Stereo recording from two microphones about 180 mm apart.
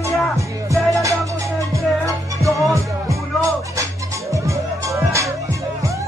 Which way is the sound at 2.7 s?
15° right (ahead or behind).